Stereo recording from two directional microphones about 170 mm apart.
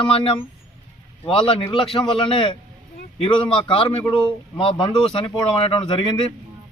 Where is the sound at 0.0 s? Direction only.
30° left (ahead or behind).